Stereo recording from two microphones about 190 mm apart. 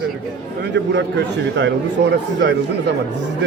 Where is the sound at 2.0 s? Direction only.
60° right (ahead or behind).